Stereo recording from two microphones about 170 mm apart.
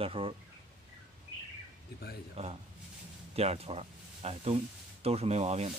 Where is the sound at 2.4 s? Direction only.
35° right (ahead or behind).